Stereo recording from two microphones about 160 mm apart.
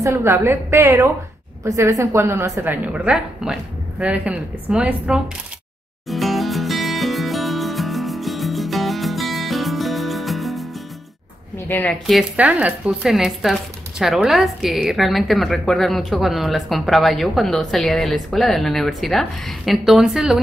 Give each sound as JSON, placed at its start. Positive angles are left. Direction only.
{"t": 0.0, "sound": "a woman's voice", "side_deg": -15}
{"t": 6.0, "sound": "music", "side_deg": 0}
{"t": 11.5, "sound": "a woman's voice", "side_deg": 15}